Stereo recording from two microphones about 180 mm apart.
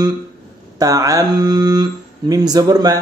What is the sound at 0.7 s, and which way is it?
Speech, 20° right (ahead or behind).